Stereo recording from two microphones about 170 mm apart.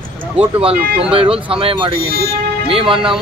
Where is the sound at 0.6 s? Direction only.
35° right (ahead or behind).